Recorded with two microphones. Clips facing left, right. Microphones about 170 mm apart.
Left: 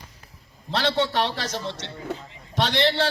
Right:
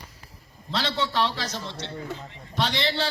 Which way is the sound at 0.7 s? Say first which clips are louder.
Left 4 dB; 60° left (ahead or behind).